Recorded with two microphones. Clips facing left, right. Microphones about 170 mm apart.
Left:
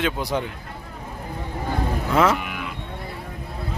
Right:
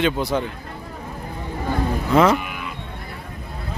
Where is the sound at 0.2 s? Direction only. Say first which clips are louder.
Right 3 dB; 15° left (ahead or behind).